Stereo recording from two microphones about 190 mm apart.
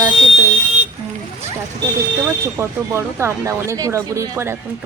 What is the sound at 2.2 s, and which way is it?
Speech, 15° right (ahead or behind).